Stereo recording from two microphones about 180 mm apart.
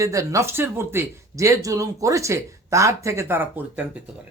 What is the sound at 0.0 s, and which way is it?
Speech, 15° right (ahead or behind).